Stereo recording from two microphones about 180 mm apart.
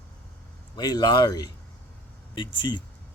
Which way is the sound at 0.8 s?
25° left (ahead or behind).